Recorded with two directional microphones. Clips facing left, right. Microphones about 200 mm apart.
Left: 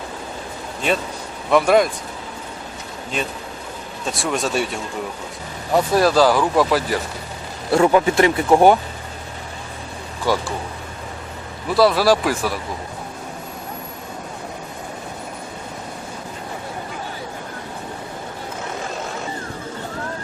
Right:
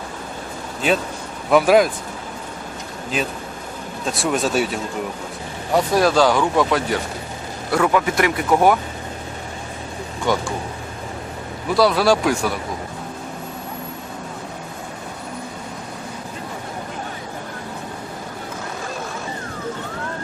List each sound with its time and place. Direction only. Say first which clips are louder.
1.5 s speech: right 1 dB; 5° right (ahead or behind)
4.0 s speech: right 2 dB; centre (ahead or behind)
7.7 s speech: left 3 dB; 30° left (ahead or behind)
10.3 s speech: even; 5° left (ahead or behind)
11.7 s speech: left 1 dB; centre (ahead or behind)